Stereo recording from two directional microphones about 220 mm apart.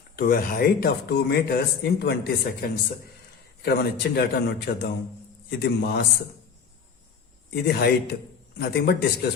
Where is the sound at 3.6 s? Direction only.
45° left (ahead or behind).